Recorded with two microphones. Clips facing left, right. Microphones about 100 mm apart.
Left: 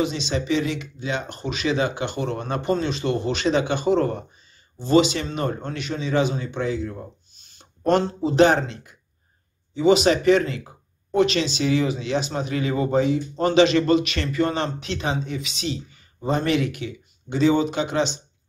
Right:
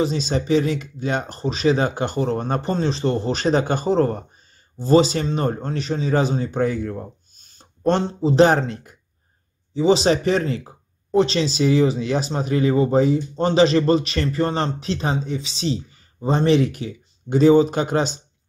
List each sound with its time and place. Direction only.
0.0 s speech: 40° right (ahead or behind)
7.8 s speech: 25° right (ahead or behind)
8.5 s speech: 45° right (ahead or behind)
9.8 s speech: 35° right (ahead or behind)